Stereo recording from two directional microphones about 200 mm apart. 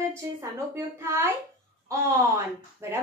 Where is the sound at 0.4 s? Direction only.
15° right (ahead or behind).